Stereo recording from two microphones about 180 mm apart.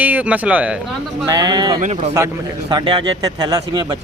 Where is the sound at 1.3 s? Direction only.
20° right (ahead or behind).